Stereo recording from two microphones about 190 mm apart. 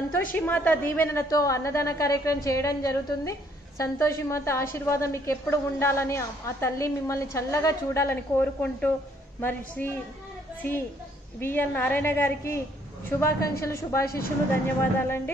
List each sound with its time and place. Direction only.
0.3 s a woman's voice: 10° left (ahead or behind)
11.3 s a woman's voice: 10° left (ahead or behind)